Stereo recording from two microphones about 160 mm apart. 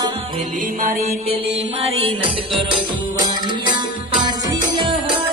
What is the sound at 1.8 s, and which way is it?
Music, 35° right (ahead or behind).